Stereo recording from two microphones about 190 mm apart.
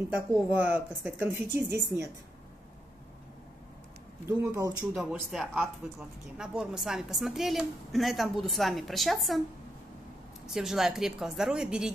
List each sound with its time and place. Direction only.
0.6 s speech: 10° right (ahead or behind)
4.3 s speech: 15° right (ahead or behind)
4.9 s speech: centre (ahead or behind)
10.4 s speech: 5° right (ahead or behind)